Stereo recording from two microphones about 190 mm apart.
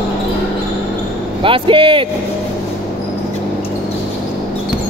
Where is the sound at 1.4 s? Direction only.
25° right (ahead or behind).